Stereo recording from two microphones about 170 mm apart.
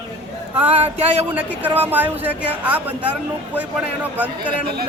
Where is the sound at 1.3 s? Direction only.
10° right (ahead or behind).